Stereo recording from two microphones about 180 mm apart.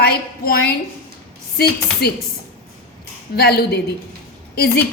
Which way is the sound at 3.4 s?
60° left (ahead or behind).